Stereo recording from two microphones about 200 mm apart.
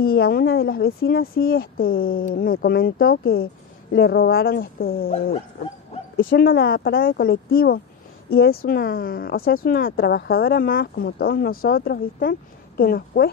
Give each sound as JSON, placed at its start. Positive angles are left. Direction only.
{"t": 0.0, "sound": "speech", "side_deg": 50}
{"t": 6.1, "sound": "speech", "side_deg": 50}